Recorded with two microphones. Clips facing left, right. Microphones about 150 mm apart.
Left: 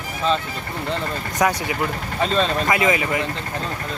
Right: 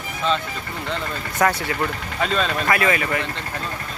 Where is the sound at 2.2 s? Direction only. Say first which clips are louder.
Left 2 dB; 30° left (ahead or behind).